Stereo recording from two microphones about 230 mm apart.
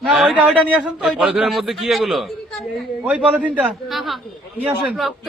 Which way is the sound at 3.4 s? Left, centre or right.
Centre.